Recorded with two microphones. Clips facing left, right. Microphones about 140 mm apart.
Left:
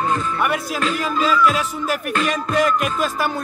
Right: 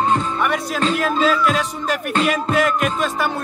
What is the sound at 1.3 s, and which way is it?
Music, centre (ahead or behind).